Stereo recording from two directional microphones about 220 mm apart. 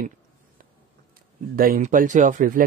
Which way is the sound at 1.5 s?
40° right (ahead or behind).